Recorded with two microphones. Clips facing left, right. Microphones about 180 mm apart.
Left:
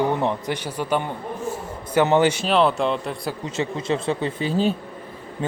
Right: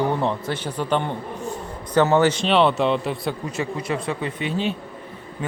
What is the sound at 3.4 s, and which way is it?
Speech, 25° left (ahead or behind).